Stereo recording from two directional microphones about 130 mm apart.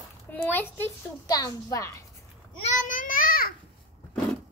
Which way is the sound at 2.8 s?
90° left.